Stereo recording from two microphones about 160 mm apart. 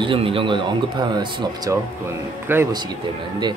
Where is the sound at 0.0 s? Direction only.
35° right (ahead or behind).